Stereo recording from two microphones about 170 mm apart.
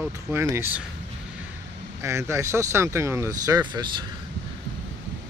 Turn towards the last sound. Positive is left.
turn(degrees=-25)  # may be behind; listen again after turning